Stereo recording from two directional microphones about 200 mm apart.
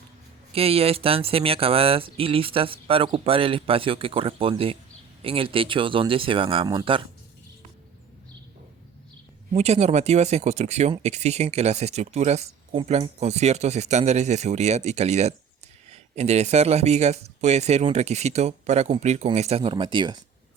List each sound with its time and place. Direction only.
0.5 s speech: 30° right (ahead or behind)
9.5 s speech: 35° right (ahead or behind)